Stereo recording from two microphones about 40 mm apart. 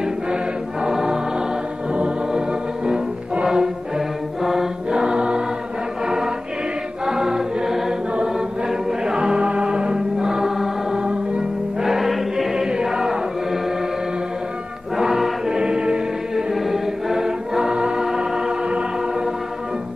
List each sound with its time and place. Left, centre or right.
0.8 s music: centre
4.4 s choir: centre
5.0 s choir: right
6.0 s music: centre
7.1 s choir: centre
8.6 s music: centre
10.1 s choir: centre
11.8 s chant: centre
12.6 s chant: centre
15.0 s chant: centre
15.5 s music: right
16.3 s choir: centre
18.0 s music: centre